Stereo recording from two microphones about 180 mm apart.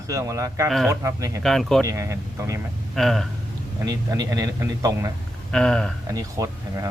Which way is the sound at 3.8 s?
20° right (ahead or behind).